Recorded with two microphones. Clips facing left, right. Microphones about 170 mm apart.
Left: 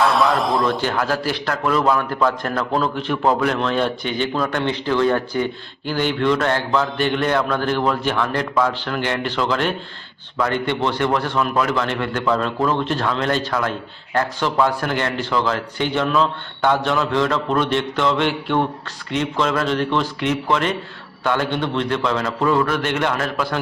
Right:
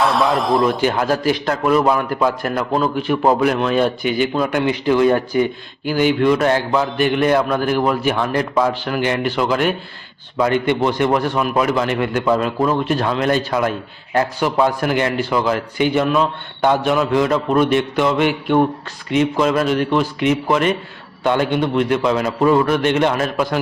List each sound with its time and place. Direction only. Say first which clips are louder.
0.5 s a man's voice: right 4 dB; 20° right (ahead or behind)